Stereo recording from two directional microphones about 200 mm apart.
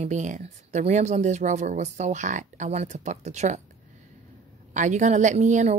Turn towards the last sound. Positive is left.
turn(degrees=-35)  # may be behind; listen again after turning